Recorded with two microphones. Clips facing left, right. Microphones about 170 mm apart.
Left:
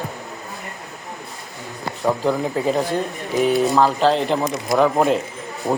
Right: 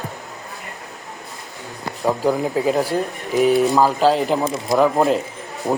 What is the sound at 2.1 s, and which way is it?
Speech, 5° right (ahead or behind).